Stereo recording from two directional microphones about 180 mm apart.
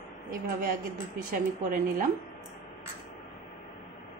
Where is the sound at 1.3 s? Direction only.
50° right (ahead or behind).